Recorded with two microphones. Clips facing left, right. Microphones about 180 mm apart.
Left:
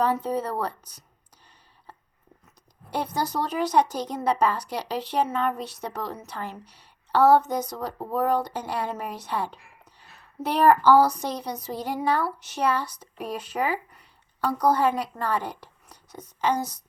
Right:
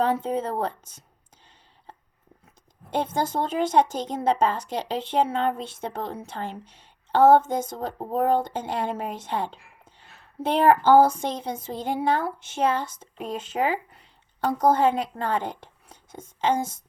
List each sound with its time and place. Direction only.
0.0 s speech: 25° right (ahead or behind)
2.9 s speech: 25° right (ahead or behind)